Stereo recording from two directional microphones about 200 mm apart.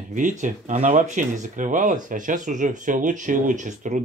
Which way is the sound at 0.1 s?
40° right (ahead or behind).